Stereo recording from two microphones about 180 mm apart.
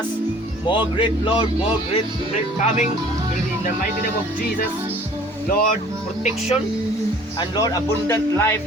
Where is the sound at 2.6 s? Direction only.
40° left (ahead or behind).